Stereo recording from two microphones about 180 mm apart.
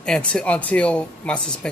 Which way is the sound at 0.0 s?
5° left (ahead or behind).